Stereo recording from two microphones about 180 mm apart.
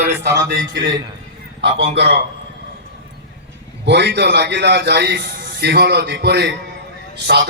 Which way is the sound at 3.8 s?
70° right (ahead or behind).